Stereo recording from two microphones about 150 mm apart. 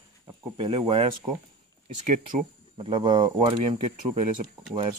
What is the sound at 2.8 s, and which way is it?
Speech, 30° right (ahead or behind).